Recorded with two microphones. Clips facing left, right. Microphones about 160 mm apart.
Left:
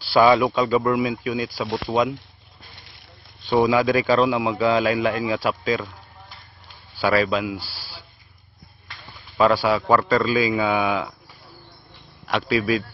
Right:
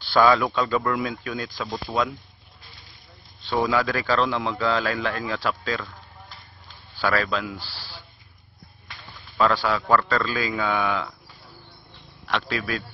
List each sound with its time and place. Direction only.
0.0 s a man's voice: 10° left (ahead or behind)
3.4 s a man's voice: 15° left (ahead or behind)
9.4 s a man's voice: 10° left (ahead or behind)
12.3 s a man's voice: 10° left (ahead or behind)